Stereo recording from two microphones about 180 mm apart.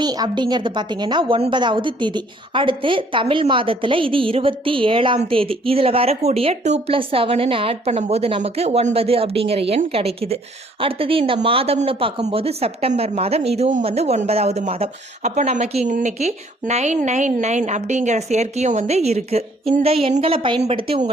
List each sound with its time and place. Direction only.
0.0 s a woman's voice: 25° right (ahead or behind)